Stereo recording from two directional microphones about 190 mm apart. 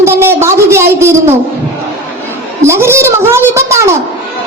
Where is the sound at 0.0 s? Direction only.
10° right (ahead or behind).